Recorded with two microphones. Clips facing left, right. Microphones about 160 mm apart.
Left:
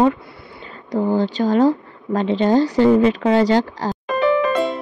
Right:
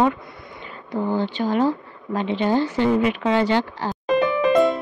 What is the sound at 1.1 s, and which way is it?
A woman's voice, 40° left (ahead or behind).